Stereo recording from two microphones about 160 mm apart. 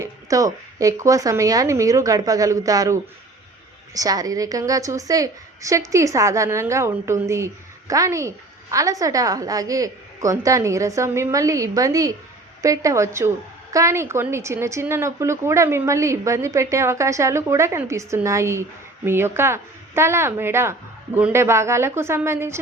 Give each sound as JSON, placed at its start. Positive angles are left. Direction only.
{"t": 0.0, "sound": "a woman's voice", "side_deg": -20}